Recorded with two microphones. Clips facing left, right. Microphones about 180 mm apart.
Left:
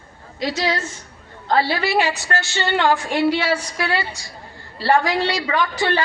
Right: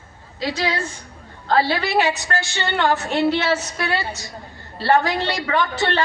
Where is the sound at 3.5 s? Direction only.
25° right (ahead or behind).